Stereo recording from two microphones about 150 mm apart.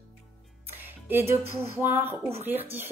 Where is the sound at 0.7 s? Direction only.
15° right (ahead or behind).